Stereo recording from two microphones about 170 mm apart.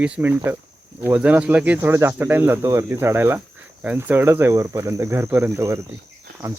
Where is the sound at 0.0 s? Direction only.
10° right (ahead or behind).